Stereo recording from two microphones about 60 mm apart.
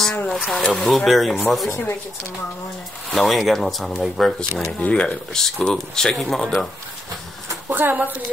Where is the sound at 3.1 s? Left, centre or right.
Centre.